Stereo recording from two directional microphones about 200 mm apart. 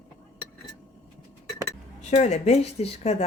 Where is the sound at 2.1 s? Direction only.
35° left (ahead or behind).